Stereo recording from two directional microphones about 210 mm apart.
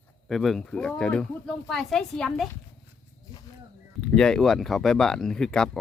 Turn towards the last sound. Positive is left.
turn(degrees=5)  # may be behind; listen again after turning